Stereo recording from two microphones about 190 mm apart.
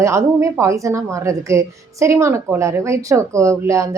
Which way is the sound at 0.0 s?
15° right (ahead or behind).